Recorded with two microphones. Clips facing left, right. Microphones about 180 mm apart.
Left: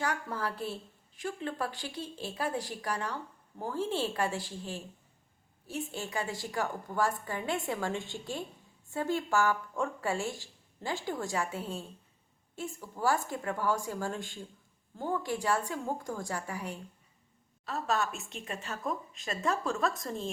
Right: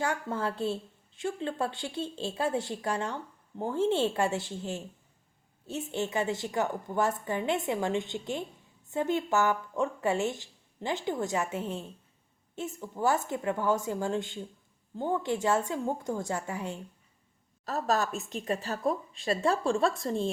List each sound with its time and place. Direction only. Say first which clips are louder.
0.0 s a woman's voice: right 3 dB; 25° right (ahead or behind)
17.7 s a woman's voice: right 3 dB; 40° right (ahead or behind)